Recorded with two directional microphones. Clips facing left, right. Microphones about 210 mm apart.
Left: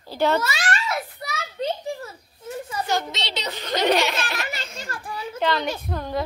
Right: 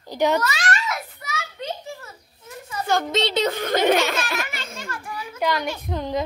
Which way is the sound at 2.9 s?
50° right (ahead or behind).